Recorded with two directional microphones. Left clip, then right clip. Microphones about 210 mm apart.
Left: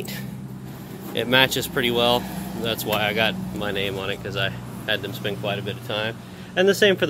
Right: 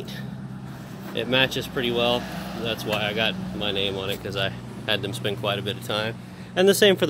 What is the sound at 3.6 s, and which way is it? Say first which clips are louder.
Speech: even; 20° right (ahead or behind).